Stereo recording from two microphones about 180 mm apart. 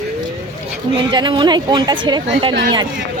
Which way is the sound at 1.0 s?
25° right (ahead or behind).